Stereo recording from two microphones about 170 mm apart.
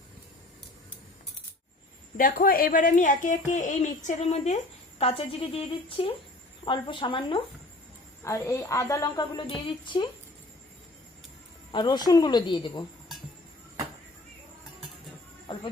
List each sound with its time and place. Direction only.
2.1 s a child's voice: 55° left (ahead or behind); by 7.4 s 30° left (ahead or behind)
8.2 s a woman's voice: 15° left (ahead or behind)
11.7 s a woman's voice: 25° left (ahead or behind)